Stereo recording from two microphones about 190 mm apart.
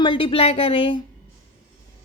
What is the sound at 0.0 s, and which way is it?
Speech, 25° left (ahead or behind).